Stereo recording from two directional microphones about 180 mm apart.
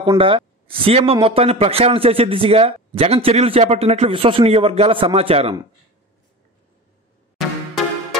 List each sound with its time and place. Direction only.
0.2 s speech: 30° right (ahead or behind)
7.3 s music: centre (ahead or behind)